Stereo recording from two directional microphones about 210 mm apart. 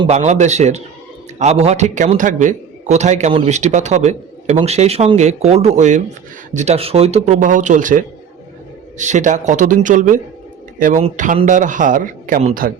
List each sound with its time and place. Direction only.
0.0 s a man's voice: 30° right (ahead or behind)